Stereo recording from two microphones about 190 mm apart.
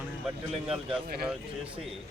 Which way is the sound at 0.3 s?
5° right (ahead or behind).